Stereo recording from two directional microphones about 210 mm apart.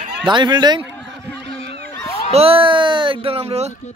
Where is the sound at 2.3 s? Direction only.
25° right (ahead or behind).